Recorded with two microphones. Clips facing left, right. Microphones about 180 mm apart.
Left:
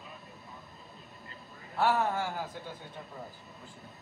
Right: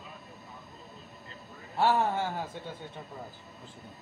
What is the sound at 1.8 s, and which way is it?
Speech, 25° right (ahead or behind).